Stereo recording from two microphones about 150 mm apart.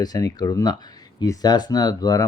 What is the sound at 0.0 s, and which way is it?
Speech, 25° left (ahead or behind).